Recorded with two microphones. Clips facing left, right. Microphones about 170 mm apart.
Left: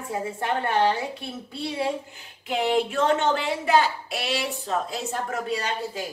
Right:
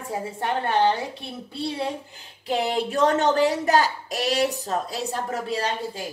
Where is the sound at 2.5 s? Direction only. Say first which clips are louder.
Left 1 dB; 35° right (ahead or behind).